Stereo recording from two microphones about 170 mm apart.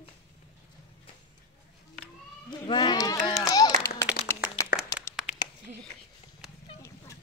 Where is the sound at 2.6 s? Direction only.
25° left (ahead or behind).